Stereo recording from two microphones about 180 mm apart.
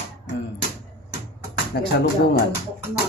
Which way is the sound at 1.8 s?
60° left (ahead or behind).